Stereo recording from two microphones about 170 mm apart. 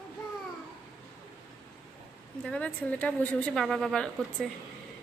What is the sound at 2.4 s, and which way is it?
A woman's voice, 5° left (ahead or behind).